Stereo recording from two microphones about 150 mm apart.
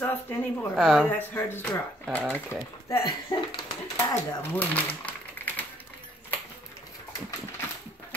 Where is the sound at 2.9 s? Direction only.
25° left (ahead or behind).